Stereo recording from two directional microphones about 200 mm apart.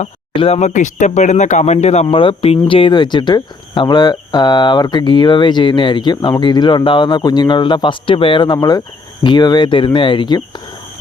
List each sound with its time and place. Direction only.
0.0 s speech: 30° left (ahead or behind)